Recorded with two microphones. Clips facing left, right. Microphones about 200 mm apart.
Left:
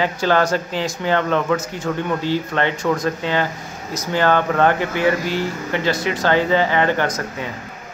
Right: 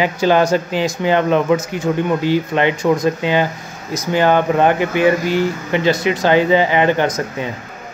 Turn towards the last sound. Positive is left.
turn(degrees=-15)  # may be behind; listen again after turning